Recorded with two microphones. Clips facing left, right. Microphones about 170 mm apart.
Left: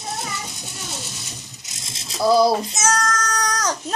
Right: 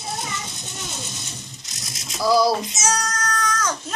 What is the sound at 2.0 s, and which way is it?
Rattle, 25° left (ahead or behind).